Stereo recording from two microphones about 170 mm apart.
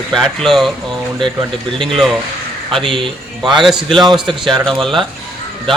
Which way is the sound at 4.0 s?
25° right (ahead or behind).